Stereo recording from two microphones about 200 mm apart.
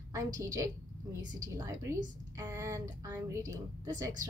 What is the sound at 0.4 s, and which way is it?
A woman's voice, 15° right (ahead or behind).